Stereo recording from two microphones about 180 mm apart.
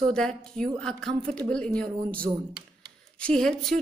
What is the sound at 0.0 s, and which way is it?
Speech, 5° left (ahead or behind).